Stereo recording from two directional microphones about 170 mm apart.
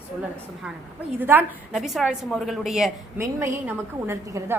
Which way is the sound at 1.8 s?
Centre (ahead or behind).